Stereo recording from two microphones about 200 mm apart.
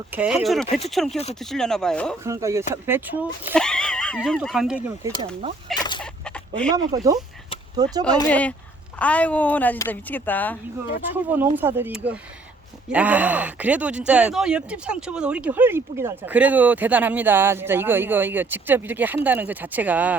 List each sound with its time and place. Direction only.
0.1 s speech: 5° right (ahead or behind)
2.2 s speech: 15° right (ahead or behind)
3.5 s speech: 5° left (ahead or behind)
5.7 s fowl: 20° left (ahead or behind)
6.0 s chicken: 5° left (ahead or behind)
6.7 s speech: 20° right (ahead or behind)
8.3 s speech: 5° left (ahead or behind)
11.1 s speech: 10° right (ahead or behind)